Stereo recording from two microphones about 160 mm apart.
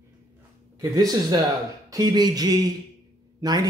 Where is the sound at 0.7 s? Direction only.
25° right (ahead or behind).